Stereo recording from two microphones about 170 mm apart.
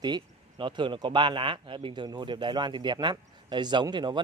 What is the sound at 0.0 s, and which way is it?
Speech, 25° right (ahead or behind).